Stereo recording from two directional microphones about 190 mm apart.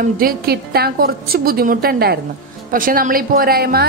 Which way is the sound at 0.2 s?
55° right (ahead or behind).